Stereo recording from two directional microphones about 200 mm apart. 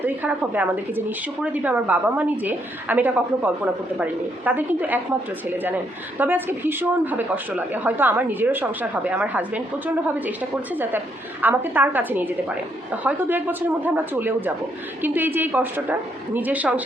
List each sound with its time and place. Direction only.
0.0 s speech: 10° right (ahead or behind)
11.4 s speech: 10° right (ahead or behind)